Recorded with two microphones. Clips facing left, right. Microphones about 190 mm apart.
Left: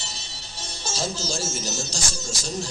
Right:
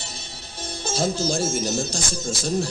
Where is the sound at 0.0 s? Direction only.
55° right (ahead or behind).